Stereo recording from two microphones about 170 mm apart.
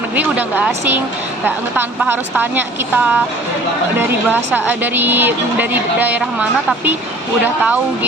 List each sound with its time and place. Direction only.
0.2 s a woman's voice: 10° right (ahead or behind)
4.5 s a woman's voice: 10° right (ahead or behind)